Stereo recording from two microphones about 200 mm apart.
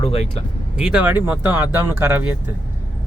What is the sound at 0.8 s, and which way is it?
Speech, 5° right (ahead or behind).